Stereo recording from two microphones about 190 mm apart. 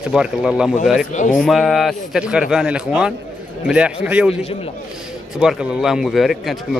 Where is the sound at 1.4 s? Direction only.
Centre (ahead or behind).